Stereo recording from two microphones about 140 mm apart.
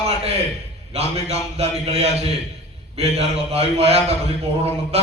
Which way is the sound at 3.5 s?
45° right (ahead or behind).